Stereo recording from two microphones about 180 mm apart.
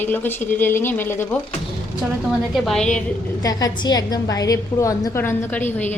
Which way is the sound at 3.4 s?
20° left (ahead or behind).